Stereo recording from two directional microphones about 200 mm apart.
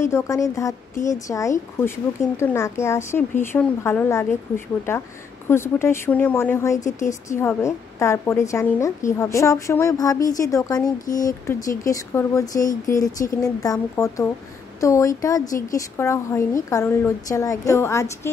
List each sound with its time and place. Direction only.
0.0 s a woman's voice: 15° left (ahead or behind)